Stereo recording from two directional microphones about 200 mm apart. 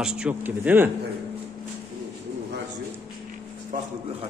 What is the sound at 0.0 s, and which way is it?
Speech, 5° right (ahead or behind).